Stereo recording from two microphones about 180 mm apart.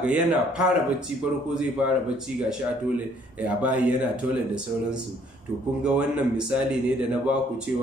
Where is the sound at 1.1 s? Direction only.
40° left (ahead or behind).